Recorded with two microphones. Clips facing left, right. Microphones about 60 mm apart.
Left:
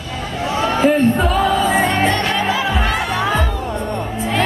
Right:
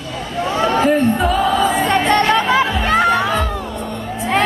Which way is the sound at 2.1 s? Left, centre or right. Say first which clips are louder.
Right 5 dB; right.